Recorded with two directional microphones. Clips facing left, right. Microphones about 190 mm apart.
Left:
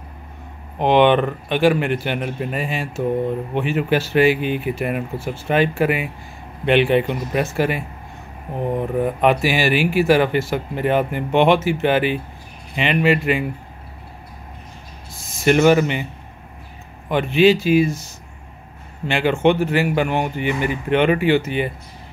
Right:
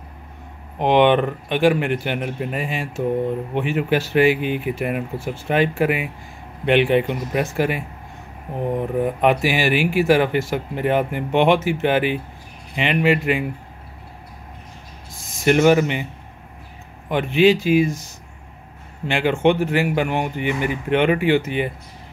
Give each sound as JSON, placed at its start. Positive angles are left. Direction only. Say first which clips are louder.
{"t": 0.7, "sound": "speech", "louder": "left 1 dB", "side_deg": -15}
{"t": 9.0, "sound": "speech", "louder": "left 1 dB", "side_deg": -15}
{"t": 15.4, "sound": "speech", "louder": "left 1 dB", "side_deg": -15}
{"t": 17.1, "sound": "speech", "louder": "left 1 dB", "side_deg": -15}
{"t": 19.0, "sound": "speech", "louder": "left 1 dB", "side_deg": -15}